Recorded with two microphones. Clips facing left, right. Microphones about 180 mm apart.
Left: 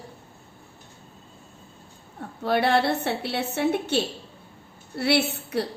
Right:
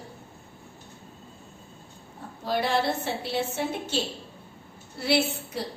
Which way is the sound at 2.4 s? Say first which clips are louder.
Left 4 dB; 65° left (ahead or behind).